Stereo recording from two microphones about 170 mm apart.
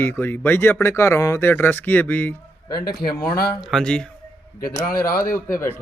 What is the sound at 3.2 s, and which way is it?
Speech, 65° left (ahead or behind).